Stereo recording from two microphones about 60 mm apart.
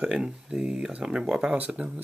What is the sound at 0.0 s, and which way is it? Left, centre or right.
Speech, centre.